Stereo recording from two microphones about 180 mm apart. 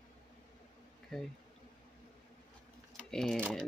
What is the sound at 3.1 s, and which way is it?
Speech, 5° left (ahead or behind).